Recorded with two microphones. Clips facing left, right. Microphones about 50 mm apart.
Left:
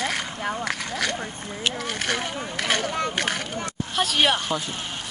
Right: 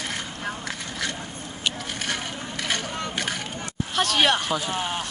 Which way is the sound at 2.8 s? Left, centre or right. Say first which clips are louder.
Left 4 dB; left.